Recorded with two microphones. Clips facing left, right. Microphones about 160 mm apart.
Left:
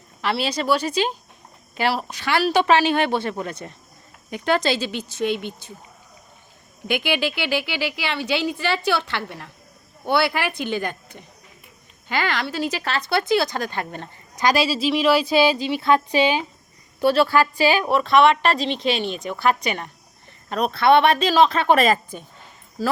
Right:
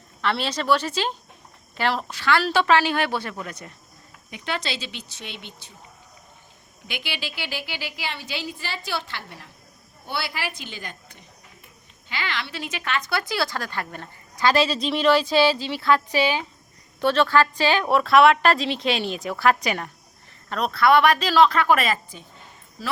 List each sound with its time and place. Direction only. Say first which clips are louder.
0.2 s speech: left 2 dB; 10° left (ahead or behind); by 3.7 s 30° left (ahead or behind)
4.3 s speech: left 9 dB; 45° left (ahead or behind)
6.8 s a woman's voice: left 11 dB; 55° left (ahead or behind)
12.0 s speech: left 7 dB; 50° left (ahead or behind); by 17.8 s 10° left (ahead or behind)
17.8 s speech: right 2 dB; centre (ahead or behind)
20.5 s speech: left 2 dB; 20° left (ahead or behind)
21.8 s speech: left 6 dB; 45° left (ahead or behind)